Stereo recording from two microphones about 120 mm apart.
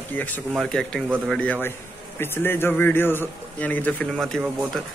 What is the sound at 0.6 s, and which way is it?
Speech, 5° left (ahead or behind).